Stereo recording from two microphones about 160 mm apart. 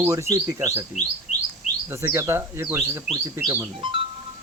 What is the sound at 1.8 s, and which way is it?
Speech, 15° right (ahead or behind).